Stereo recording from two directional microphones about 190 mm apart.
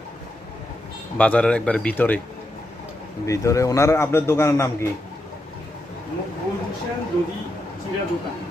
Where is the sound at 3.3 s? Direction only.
15° left (ahead or behind).